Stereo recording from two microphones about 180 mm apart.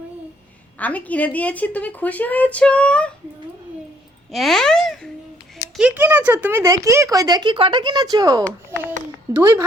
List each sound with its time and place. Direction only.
0.8 s a woman's voice: 10° left (ahead or behind)
4.3 s a child's voice: centre (ahead or behind)
5.7 s speech: 5° right (ahead or behind); by 9.6 s 20° right (ahead or behind)